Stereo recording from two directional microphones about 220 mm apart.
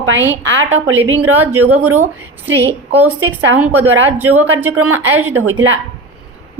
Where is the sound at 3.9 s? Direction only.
80° right.